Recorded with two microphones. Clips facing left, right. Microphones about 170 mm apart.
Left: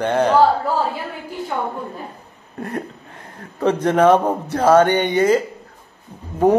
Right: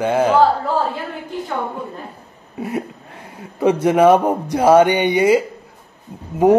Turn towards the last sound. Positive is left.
turn(degrees=-10)  # may be behind; listen again after turning